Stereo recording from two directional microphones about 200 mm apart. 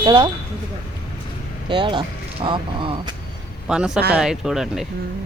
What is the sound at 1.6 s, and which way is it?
Speech, 25° right (ahead or behind).